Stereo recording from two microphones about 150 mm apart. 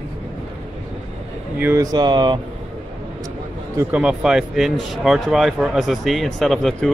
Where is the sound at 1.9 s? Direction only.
30° right (ahead or behind).